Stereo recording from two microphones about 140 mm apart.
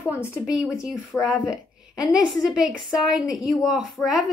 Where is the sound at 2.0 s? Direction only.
Centre (ahead or behind).